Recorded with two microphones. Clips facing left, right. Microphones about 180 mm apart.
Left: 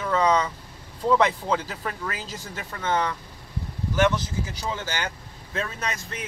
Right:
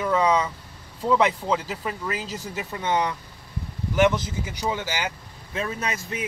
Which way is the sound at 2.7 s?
15° right (ahead or behind).